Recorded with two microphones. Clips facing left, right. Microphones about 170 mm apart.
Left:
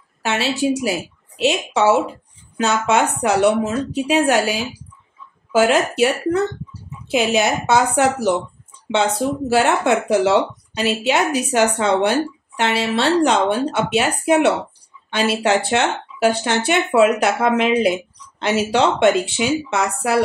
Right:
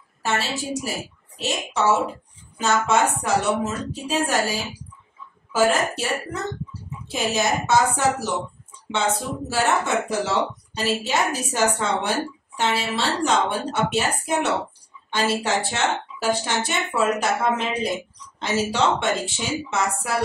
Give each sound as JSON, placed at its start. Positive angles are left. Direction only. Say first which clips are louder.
{"t": 0.2, "sound": "a woman's voice", "louder": "left 6 dB", "side_deg": 70}
{"t": 9.5, "sound": "a woman's voice", "louder": "left 5 dB", "side_deg": 70}